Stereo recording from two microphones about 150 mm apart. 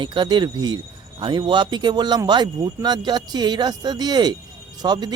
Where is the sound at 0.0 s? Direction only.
30° right (ahead or behind).